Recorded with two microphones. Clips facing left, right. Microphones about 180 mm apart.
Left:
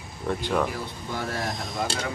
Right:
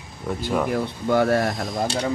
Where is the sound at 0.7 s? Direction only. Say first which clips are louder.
Right 11 dB; 65° right (ahead or behind).